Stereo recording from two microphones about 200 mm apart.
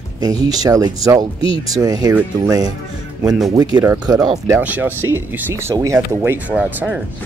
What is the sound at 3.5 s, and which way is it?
Speech, 20° right (ahead or behind).